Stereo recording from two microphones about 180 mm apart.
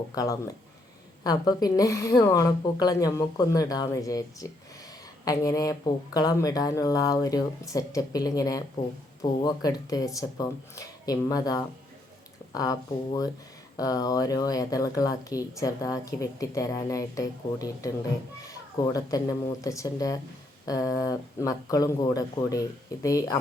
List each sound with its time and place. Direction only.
0.1 s speech: 20° left (ahead or behind)
13.7 s speech: 20° left (ahead or behind)